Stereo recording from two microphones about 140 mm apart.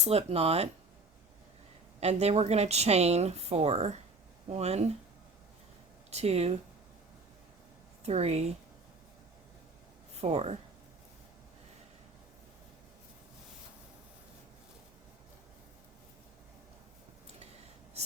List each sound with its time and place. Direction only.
0.0 s a woman's voice: 45° right (ahead or behind)
2.0 s a woman's voice: 50° right (ahead or behind)
6.1 s a woman's voice: 50° right (ahead or behind)
8.0 s a woman's voice: 50° right (ahead or behind)
10.2 s a woman's voice: 50° right (ahead or behind)